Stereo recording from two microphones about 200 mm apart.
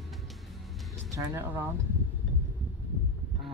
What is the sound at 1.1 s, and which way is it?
Speech, 15° right (ahead or behind).